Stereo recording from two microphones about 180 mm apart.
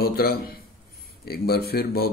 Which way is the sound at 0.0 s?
60° left (ahead or behind).